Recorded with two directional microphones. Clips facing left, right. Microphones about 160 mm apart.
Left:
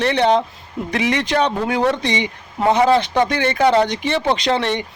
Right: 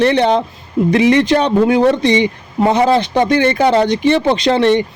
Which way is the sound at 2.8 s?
35° right (ahead or behind).